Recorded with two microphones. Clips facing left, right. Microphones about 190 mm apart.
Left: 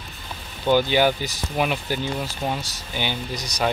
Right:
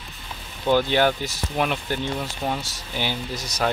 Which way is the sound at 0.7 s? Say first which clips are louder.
Left 1 dB; centre (ahead or behind).